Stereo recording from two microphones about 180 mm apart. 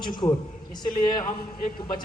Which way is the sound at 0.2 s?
20° left (ahead or behind).